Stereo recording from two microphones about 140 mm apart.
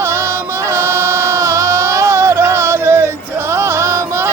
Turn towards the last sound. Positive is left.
turn(degrees=-20)  # may be behind; listen again after turning